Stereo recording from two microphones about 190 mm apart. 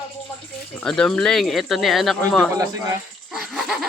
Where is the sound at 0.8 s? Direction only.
Centre (ahead or behind).